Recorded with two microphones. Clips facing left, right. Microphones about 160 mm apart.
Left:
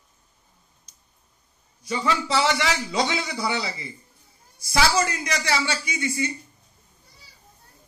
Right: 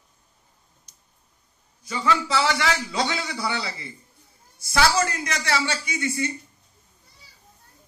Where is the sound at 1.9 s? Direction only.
25° left (ahead or behind).